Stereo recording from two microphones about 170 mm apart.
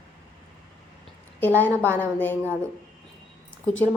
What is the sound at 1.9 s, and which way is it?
Speech, 10° left (ahead or behind).